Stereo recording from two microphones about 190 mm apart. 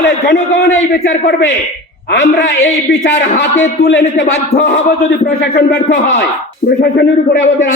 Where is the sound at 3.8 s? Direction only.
65° left (ahead or behind).